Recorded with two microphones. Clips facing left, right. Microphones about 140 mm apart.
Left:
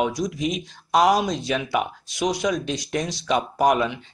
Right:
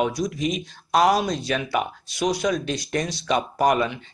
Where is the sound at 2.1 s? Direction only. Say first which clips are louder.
Even; 15° left (ahead or behind).